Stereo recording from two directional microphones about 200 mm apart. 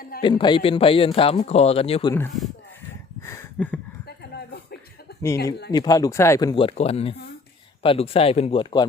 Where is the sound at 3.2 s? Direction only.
10° left (ahead or behind).